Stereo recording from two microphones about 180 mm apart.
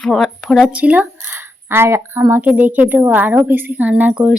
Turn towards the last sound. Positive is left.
turn(degrees=-5)  # may be behind; listen again after turning